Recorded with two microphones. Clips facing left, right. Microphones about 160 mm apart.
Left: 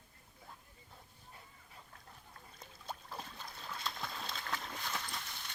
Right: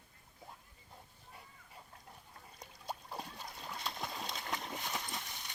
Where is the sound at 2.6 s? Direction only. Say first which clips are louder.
Right 2 dB; 15° right (ahead or behind).